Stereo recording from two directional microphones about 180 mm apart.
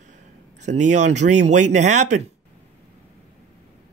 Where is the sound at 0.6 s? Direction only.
40° right (ahead or behind).